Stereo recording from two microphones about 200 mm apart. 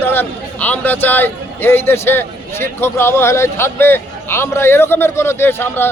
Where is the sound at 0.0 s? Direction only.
10° left (ahead or behind).